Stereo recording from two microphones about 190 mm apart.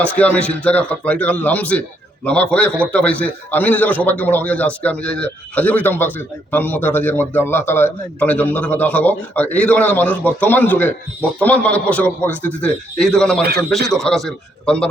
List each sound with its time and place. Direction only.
0.0 s a man's voice: 5° left (ahead or behind)
13.4 s a man's voice: 55° right (ahead or behind)
13.9 s a man's voice: centre (ahead or behind)